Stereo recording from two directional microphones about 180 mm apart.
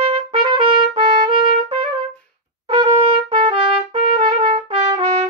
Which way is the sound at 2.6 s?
25° right (ahead or behind).